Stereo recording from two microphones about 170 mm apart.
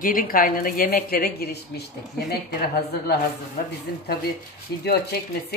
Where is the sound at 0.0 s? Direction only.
55° left (ahead or behind).